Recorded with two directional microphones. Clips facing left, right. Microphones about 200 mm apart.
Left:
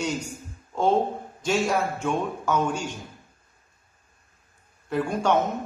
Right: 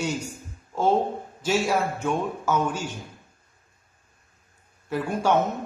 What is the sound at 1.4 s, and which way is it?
A man's voice, 5° right (ahead or behind).